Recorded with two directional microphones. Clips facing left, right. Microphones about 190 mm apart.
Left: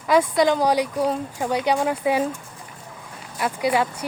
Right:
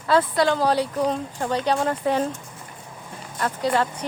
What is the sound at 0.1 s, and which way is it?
Speech, 15° left (ahead or behind).